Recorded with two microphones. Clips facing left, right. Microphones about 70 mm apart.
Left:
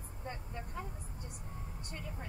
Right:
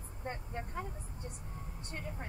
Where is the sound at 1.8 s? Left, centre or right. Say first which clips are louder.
Right 4 dB; right.